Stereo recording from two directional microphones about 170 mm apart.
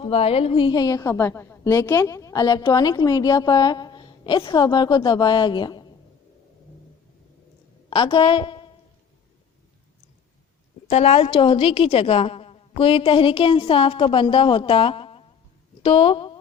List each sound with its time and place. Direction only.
0.0 s a woman's voice: 35° left (ahead or behind)
7.9 s a woman's voice: 30° left (ahead or behind)
10.9 s a woman's voice: 35° left (ahead or behind)